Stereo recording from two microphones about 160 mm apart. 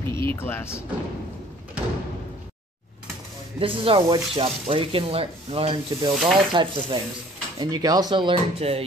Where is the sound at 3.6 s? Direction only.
35° right (ahead or behind).